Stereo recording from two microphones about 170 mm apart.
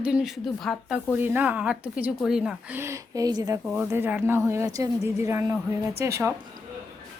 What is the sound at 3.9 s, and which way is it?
Speech, 10° right (ahead or behind).